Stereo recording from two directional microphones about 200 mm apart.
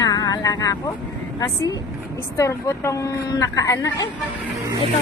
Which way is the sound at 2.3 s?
15° left (ahead or behind).